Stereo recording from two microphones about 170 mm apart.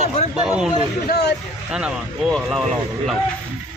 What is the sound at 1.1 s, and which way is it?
Speech, 75° left (ahead or behind).